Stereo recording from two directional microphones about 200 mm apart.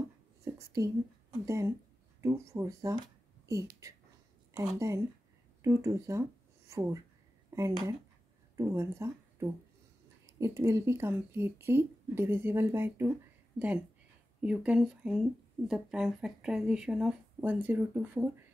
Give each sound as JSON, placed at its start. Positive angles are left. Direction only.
{"t": 1.4, "sound": "speech", "side_deg": -15}
{"t": 14.4, "sound": "speech", "side_deg": -5}